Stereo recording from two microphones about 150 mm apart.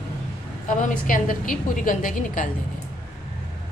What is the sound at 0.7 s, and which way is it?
A woman's voice, 60° left (ahead or behind).